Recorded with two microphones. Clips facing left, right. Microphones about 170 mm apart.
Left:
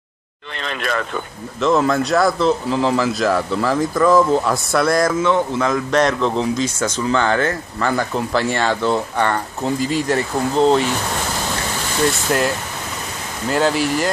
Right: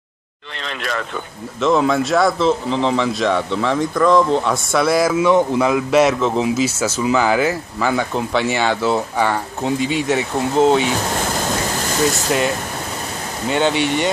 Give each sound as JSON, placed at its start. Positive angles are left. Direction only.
{"t": 0.7, "sound": "speech", "side_deg": 50}
{"t": 1.6, "sound": "a man's voice", "side_deg": 0}
{"t": 12.0, "sound": "a man's voice", "side_deg": 0}